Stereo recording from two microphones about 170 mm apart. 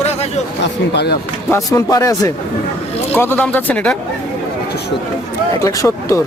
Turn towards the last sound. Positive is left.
turn(degrees=20)  # may be behind; listen again after turning